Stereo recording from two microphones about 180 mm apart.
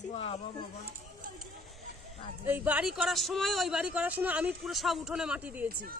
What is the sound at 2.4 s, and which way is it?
Speech, 10° right (ahead or behind).